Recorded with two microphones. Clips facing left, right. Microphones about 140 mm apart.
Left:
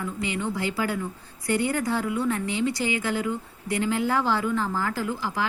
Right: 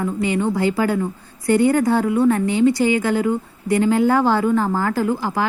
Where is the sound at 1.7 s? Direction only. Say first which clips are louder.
Right 9 dB; 45° right (ahead or behind).